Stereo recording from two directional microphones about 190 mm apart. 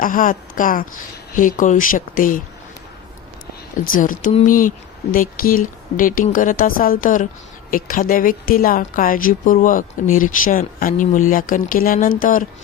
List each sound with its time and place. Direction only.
0.0 s speech: 45° left (ahead or behind)
3.8 s speech: 45° left (ahead or behind)